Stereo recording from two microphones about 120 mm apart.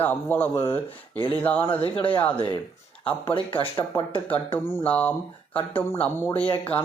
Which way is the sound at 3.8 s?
25° left (ahead or behind).